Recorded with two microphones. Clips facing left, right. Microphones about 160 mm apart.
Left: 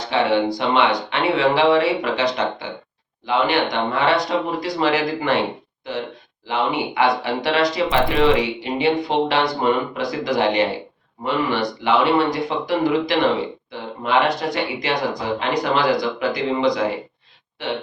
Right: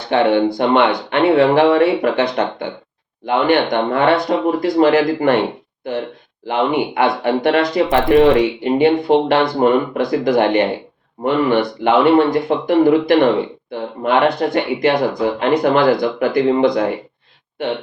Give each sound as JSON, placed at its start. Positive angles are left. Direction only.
{"t": 0.1, "sound": "speech", "side_deg": -55}
{"t": 6.5, "sound": "speech", "side_deg": -55}